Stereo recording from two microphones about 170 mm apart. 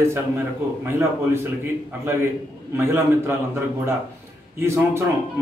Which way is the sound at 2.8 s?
15° right (ahead or behind).